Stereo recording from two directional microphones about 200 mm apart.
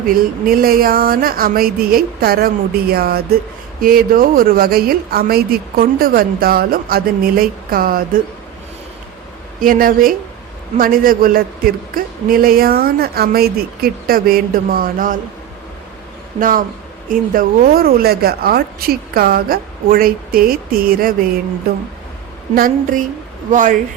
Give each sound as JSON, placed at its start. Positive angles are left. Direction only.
{"t": 0.1, "sound": "a woman's voice", "side_deg": -45}
{"t": 9.6, "sound": "a woman's voice", "side_deg": -45}
{"t": 16.4, "sound": "a woman's voice", "side_deg": -45}
{"t": 22.5, "sound": "a woman's voice", "side_deg": -45}